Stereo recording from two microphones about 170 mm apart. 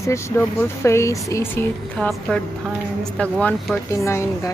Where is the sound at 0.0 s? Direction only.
15° left (ahead or behind).